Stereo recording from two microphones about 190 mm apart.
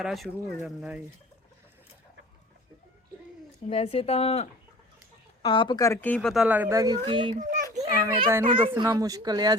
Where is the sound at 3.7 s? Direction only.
30° left (ahead or behind); by 7.3 s 25° right (ahead or behind).